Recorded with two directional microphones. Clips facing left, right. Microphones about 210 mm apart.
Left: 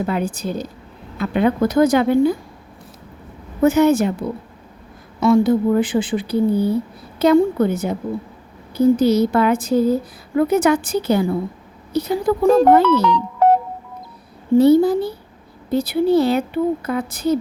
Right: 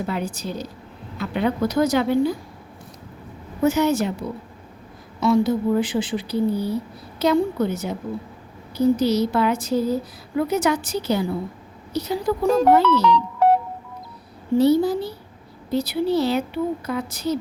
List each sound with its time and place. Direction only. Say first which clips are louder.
0.0 s a woman's voice: left 5 dB; 55° left (ahead or behind)
3.6 s a woman's voice: left 5 dB; 55° left (ahead or behind)
5.2 s a woman's voice: left 4 dB; 55° left (ahead or behind)
14.6 s a woman's voice: left 5 dB; 55° left (ahead or behind)